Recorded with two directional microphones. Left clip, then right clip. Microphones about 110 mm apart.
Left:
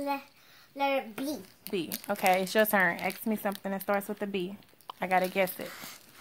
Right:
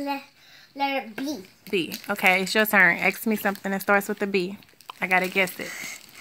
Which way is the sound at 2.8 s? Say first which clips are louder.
Right 9 dB; 25° right (ahead or behind).